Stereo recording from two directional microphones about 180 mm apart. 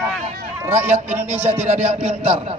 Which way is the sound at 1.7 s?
35° right (ahead or behind).